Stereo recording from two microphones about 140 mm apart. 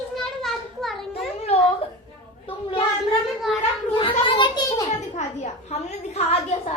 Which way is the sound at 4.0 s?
35° left (ahead or behind).